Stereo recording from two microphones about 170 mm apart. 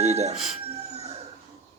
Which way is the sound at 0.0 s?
40° right (ahead or behind).